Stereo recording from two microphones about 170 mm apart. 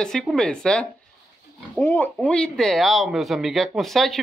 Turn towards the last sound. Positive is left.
turn(degrees=0)  # may be behind; listen again after turning